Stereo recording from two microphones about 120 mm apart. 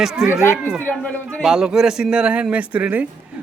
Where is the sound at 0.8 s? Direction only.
15° left (ahead or behind).